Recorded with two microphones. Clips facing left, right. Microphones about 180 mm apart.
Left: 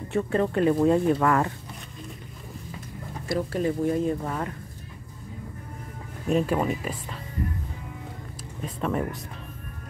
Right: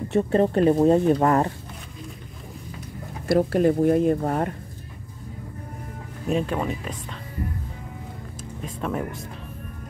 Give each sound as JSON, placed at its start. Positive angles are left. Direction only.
{"t": 0.1, "sound": "speech", "side_deg": -35}
{"t": 3.3, "sound": "speech", "side_deg": -60}
{"t": 6.2, "sound": "speech", "side_deg": 5}
{"t": 8.6, "sound": "speech", "side_deg": 0}